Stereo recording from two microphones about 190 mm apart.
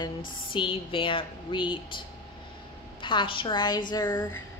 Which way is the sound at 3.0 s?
25° left (ahead or behind).